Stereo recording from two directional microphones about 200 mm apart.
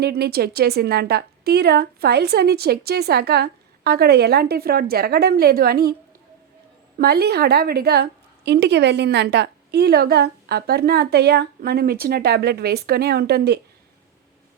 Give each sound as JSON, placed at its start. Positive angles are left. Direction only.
{"t": 0.0, "sound": "a woman's voice", "side_deg": -55}
{"t": 7.0, "sound": "a woman's voice", "side_deg": -55}